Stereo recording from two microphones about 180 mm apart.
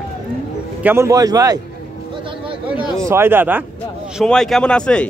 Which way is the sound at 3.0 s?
15° right (ahead or behind).